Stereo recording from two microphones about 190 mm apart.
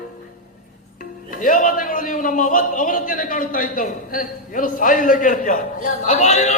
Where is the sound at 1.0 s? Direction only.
45° left (ahead or behind).